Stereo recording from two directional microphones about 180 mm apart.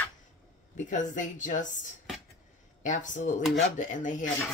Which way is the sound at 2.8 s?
45° left (ahead or behind).